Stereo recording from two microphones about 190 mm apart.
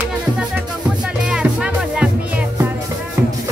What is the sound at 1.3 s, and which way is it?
Music, 5° right (ahead or behind).